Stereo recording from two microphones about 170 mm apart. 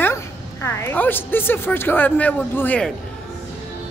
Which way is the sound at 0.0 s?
15° left (ahead or behind).